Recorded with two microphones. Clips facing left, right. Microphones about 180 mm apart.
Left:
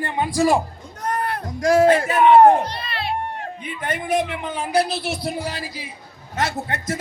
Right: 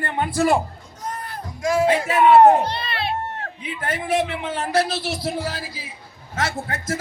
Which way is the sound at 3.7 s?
5° right (ahead or behind).